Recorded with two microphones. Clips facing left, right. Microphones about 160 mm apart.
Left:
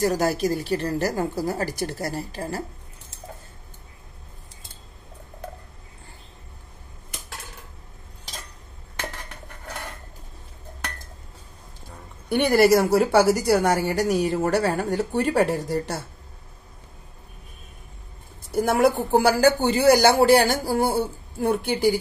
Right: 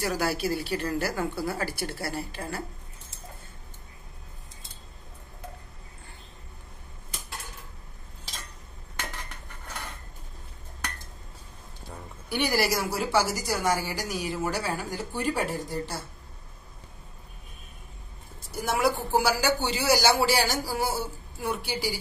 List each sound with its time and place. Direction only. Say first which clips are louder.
0.0 s a woman's voice: left 6 dB; 40° left (ahead or behind)
12.3 s a woman's voice: left 9 dB; 55° left (ahead or behind)
18.5 s a woman's voice: left 7 dB; 55° left (ahead or behind)